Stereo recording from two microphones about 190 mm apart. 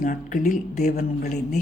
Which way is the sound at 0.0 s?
45° left (ahead or behind).